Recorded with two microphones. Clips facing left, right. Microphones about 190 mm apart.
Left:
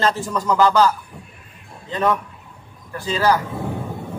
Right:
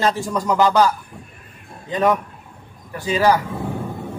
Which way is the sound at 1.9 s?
15° right (ahead or behind).